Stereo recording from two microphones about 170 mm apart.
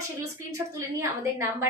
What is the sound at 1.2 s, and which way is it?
Speech, 15° right (ahead or behind).